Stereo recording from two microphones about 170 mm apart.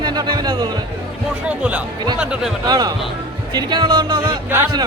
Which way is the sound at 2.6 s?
25° right (ahead or behind).